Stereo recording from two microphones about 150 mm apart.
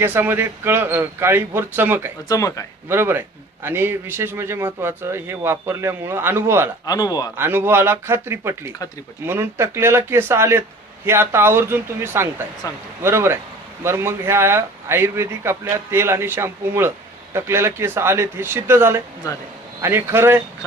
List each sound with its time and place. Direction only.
0.0 s a man's voice: 15° right (ahead or behind)
2.3 s a man's voice: 20° left (ahead or behind)
2.9 s a man's voice: 15° right (ahead or behind)
6.8 s a man's voice: 25° left (ahead or behind)
7.3 s a man's voice: 15° right (ahead or behind)